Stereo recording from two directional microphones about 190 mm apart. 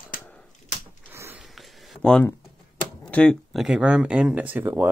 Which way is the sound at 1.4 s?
Centre (ahead or behind).